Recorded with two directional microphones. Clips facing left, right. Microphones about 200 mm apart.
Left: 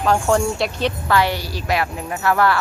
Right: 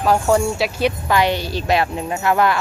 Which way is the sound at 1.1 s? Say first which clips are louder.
Right 1 dB; 20° right (ahead or behind).